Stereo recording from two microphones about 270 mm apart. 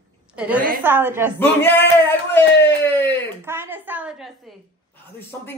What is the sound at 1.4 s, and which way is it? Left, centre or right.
Speech, centre.